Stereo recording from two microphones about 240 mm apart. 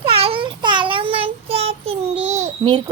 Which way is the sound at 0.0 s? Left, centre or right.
Right.